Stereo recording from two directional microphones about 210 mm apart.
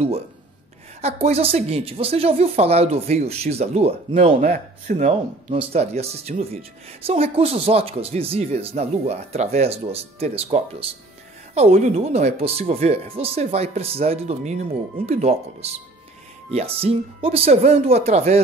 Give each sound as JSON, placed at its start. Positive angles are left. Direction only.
{"t": 1.0, "sound": "speech", "side_deg": -30}